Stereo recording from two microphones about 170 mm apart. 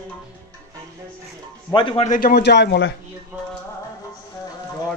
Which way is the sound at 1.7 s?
30° left (ahead or behind).